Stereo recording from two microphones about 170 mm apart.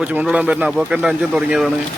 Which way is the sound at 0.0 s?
10° right (ahead or behind).